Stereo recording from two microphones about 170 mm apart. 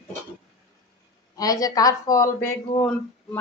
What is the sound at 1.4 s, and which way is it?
Female singing, 20° left (ahead or behind).